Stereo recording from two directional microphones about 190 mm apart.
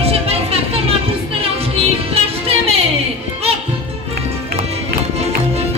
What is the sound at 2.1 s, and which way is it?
Music, 30° right (ahead or behind).